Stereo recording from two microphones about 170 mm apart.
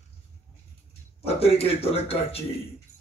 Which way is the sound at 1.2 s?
35° left (ahead or behind).